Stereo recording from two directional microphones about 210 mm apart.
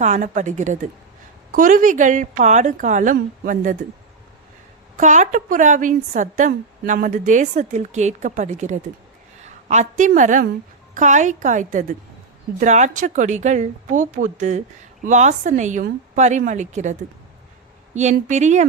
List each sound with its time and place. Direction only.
0.0 s a woman's voice: 35° right (ahead or behind)
4.9 s a woman's voice: 35° right (ahead or behind)
10.0 s a woman's voice: 35° right (ahead or behind)